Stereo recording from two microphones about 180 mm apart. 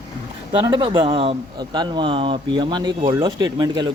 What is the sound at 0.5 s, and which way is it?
Speech, 25° right (ahead or behind).